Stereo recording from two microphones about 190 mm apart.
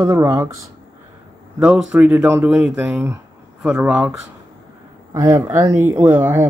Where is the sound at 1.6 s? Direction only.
5° right (ahead or behind).